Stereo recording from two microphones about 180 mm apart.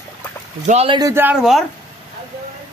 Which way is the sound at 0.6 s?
35° right (ahead or behind).